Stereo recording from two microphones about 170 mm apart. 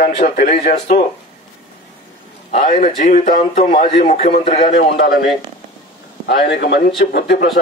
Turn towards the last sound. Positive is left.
turn(degrees=75)  # may be behind; listen again after turning